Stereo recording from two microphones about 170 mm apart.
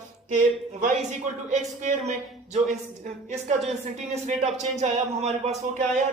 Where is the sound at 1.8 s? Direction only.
45° right (ahead or behind).